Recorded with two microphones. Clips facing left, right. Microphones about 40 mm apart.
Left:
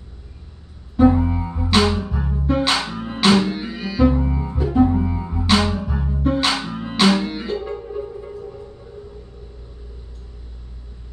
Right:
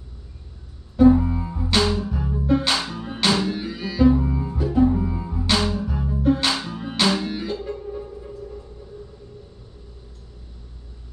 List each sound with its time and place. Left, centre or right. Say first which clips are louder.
1.0 s music: even; left